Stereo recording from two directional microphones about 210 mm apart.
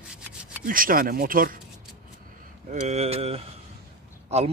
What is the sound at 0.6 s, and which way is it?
Speech, 40° right (ahead or behind).